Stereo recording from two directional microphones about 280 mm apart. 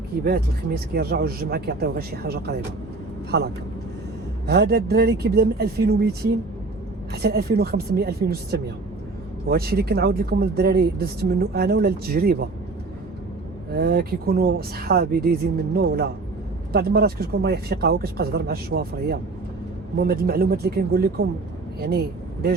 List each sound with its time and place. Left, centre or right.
0.3 s speech: right
7.1 s speech: right
13.7 s speech: right